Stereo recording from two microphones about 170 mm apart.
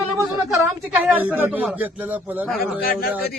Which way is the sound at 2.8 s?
60° left (ahead or behind).